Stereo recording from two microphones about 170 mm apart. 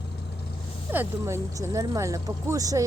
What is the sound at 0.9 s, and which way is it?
Speech, 15° right (ahead or behind).